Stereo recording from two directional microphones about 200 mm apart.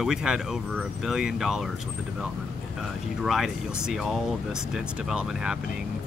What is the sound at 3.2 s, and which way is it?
Speech, centre (ahead or behind).